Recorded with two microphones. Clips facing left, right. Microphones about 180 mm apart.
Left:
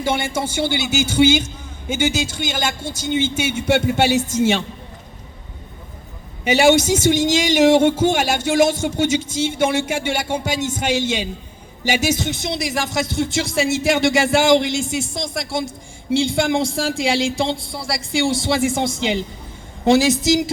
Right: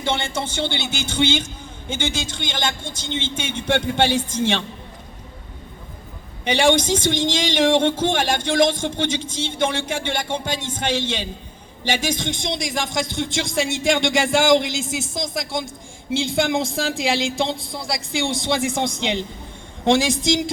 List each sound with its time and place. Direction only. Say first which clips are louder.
0.0 s speech: left 3 dB; 10° left (ahead or behind)
6.4 s speech: left 4 dB; 10° left (ahead or behind)